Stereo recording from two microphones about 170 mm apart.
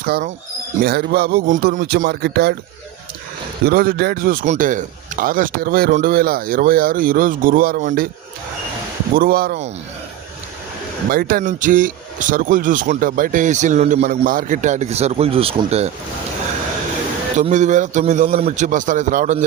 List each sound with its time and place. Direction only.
0.0 s speech: 55° right (ahead or behind)
0.8 s a man's voice: 65° right (ahead or behind); by 1.8 s 50° right (ahead or behind)
2.0 s speech: 70° right (ahead or behind)
3.7 s a man's voice: 60° right (ahead or behind)
9.1 s a man's voice: 60° right (ahead or behind)
11.1 s speech: 55° right (ahead or behind); by 15.9 s 35° right (ahead or behind)
17.3 s speech: 45° right (ahead or behind)